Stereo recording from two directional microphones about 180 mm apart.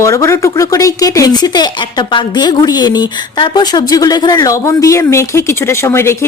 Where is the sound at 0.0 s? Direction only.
15° left (ahead or behind).